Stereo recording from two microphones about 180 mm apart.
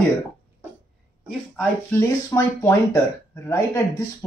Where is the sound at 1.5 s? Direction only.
15° left (ahead or behind).